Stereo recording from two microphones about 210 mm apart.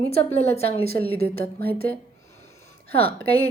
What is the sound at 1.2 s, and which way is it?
Speech, 45° right (ahead or behind).